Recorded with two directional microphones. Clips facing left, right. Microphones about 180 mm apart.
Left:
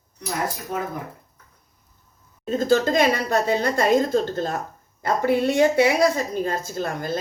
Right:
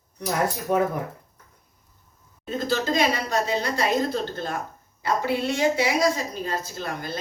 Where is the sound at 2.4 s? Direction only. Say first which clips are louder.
Left 6 dB; 45° left (ahead or behind).